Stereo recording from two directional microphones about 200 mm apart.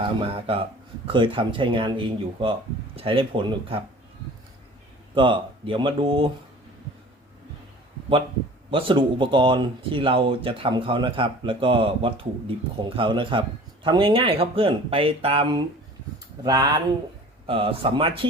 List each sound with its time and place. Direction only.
0.2 s speech: 25° right (ahead or behind)
5.1 s speech: 25° right (ahead or behind)
8.7 s speech: 25° right (ahead or behind)